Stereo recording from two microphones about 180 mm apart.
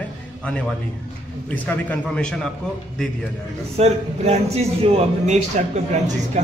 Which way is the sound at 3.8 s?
35° right (ahead or behind).